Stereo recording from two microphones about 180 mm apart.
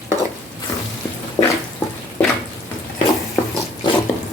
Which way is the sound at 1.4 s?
25° left (ahead or behind).